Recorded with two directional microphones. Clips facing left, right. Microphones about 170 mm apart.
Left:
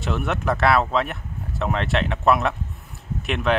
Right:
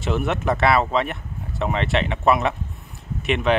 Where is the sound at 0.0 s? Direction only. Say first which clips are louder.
Right 2 dB; centre (ahead or behind).